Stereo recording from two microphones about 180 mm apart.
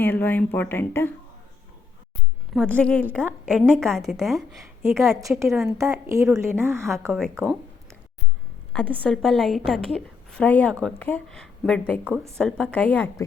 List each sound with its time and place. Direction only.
0.0 s speech: 10° left (ahead or behind)
2.5 s a woman's voice: 5° left (ahead or behind)
4.8 s speech: 15° right (ahead or behind)
8.7 s a woman's voice: 5° left (ahead or behind)
12.0 s speech: 10° right (ahead or behind)
12.4 s speech: 5° left (ahead or behind)